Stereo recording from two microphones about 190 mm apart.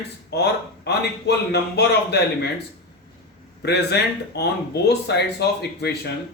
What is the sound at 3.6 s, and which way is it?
Speech, 60° left (ahead or behind).